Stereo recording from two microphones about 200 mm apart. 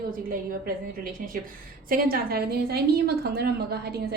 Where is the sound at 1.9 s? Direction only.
45° right (ahead or behind).